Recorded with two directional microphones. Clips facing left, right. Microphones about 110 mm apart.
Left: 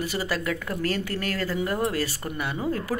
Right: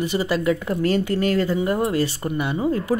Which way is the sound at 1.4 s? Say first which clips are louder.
Right 6 dB; 25° right (ahead or behind).